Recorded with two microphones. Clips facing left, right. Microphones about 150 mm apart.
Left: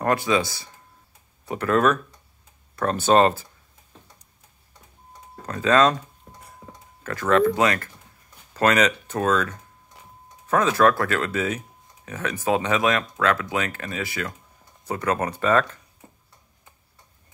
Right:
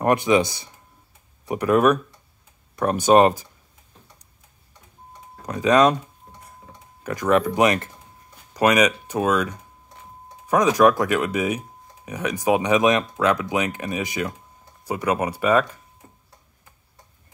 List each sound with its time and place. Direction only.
0.0 s speech: 20° right (ahead or behind)
5.4 s speech: 15° right (ahead or behind)
6.2 s tick-tock: 80° left
7.0 s speech: 15° right (ahead or behind)